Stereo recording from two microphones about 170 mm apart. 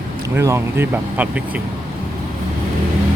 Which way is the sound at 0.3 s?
15° right (ahead or behind).